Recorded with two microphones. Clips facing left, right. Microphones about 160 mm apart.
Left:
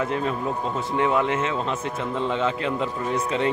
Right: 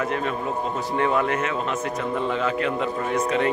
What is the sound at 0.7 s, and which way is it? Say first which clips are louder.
Speech: even; 15° left (ahead or behind).